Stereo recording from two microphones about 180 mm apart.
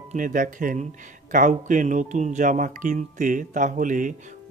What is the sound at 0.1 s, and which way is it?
Speech, 45° right (ahead or behind).